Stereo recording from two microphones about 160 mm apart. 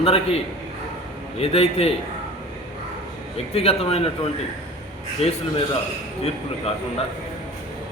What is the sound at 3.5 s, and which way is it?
Speech, 40° left (ahead or behind).